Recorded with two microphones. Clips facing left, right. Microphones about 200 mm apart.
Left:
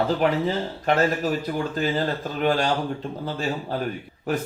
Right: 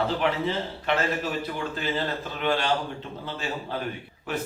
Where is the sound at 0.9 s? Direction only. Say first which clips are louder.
Left 5 dB; 40° left (ahead or behind).